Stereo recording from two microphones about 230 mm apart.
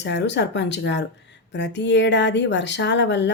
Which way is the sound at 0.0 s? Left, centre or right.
Left.